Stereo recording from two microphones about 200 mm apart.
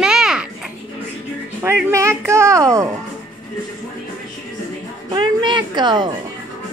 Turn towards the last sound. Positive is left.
turn(degrees=-20)  # may be behind; listen again after turning